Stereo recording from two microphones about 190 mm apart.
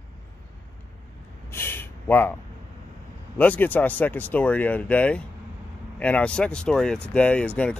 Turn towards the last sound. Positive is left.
turn(degrees=5)  # may be behind; listen again after turning